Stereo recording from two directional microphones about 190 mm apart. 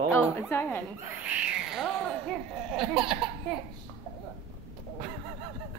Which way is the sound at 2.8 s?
Centre (ahead or behind).